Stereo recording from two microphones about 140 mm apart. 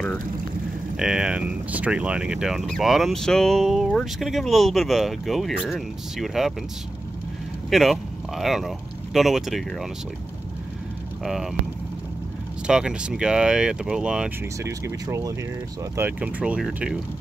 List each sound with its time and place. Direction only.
0.9 s speech: 5° right (ahead or behind)
7.7 s speech: centre (ahead or behind)
12.6 s speech: 5° right (ahead or behind)
14.6 s speech: 20° right (ahead or behind)